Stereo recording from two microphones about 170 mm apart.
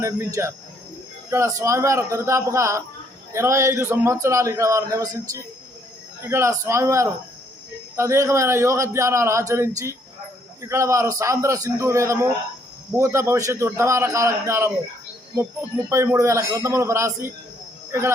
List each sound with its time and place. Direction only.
0.0 s a man's voice: 15° right (ahead or behind)
15.9 s a man's voice: 15° right (ahead or behind)